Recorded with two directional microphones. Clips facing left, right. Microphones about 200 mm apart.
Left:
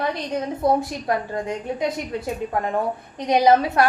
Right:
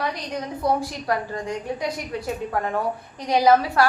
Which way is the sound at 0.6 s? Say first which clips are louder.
Left 2 dB; 25° left (ahead or behind).